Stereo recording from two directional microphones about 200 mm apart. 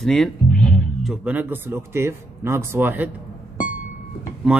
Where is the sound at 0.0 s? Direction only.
Centre (ahead or behind).